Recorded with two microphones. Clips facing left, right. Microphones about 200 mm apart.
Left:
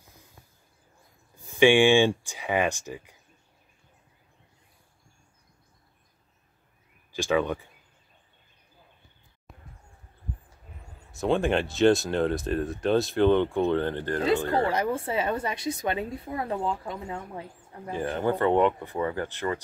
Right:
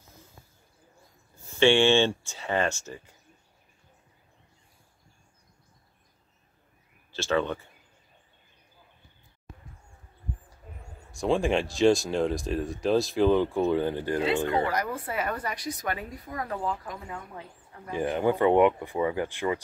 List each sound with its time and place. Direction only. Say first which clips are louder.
1.3 s speech: left 2 dB; 15° left (ahead or behind)
7.1 s speech: left 2 dB; 15° left (ahead or behind)
11.1 s speech: left 1 dB; centre (ahead or behind)
14.5 s a woman's voice: left 2 dB; 30° left (ahead or behind)
17.9 s speech: right 2 dB; 15° right (ahead or behind)